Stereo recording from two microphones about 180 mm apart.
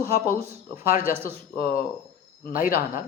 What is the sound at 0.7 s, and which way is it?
Speech, 50° left (ahead or behind).